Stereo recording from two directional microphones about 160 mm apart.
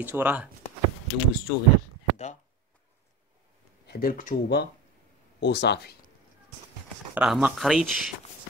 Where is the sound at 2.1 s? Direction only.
45° left (ahead or behind).